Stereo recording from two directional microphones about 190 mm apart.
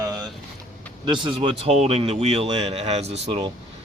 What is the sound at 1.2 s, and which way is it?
Speech, 30° right (ahead or behind).